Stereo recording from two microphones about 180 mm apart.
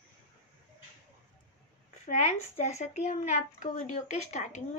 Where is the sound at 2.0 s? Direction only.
45° left (ahead or behind).